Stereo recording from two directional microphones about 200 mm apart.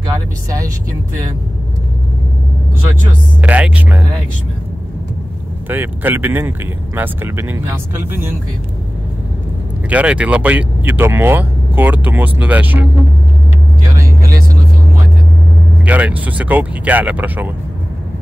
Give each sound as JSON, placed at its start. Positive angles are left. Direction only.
{"t": 3.3, "sound": "speech", "side_deg": -5}
{"t": 5.7, "sound": "speech", "side_deg": -10}
{"t": 9.8, "sound": "speech", "side_deg": -5}
{"t": 13.9, "sound": "vehicle", "side_deg": -15}
{"t": 15.8, "sound": "speech", "side_deg": -5}